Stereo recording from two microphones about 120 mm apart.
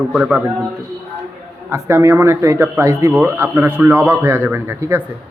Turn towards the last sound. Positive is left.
turn(degrees=-20)  # may be behind; listen again after turning